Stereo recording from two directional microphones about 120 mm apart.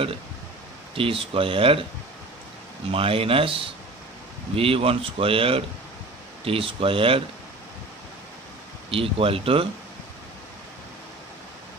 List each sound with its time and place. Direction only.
0.9 s speech: 50° right (ahead or behind)
2.9 s speech: 50° right (ahead or behind)
8.9 s speech: 50° right (ahead or behind)